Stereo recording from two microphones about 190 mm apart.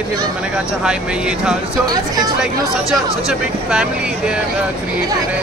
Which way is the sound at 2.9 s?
5° right (ahead or behind).